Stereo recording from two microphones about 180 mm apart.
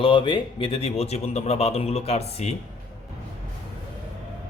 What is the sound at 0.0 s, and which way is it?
A man's voice, 25° left (ahead or behind).